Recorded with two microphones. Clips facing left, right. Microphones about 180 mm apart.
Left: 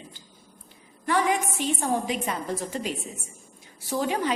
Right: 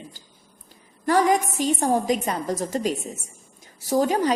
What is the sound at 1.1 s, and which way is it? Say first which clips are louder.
A woman's voice: right 5 dB; 40° right (ahead or behind).